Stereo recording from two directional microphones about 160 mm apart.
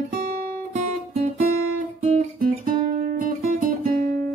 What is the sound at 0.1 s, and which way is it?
Guitar, 65° right (ahead or behind).